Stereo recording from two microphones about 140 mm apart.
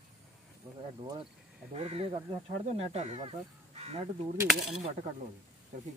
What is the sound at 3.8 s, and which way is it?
Crow, 45° right (ahead or behind).